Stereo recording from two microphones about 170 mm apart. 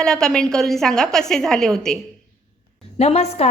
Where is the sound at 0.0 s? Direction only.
5° left (ahead or behind).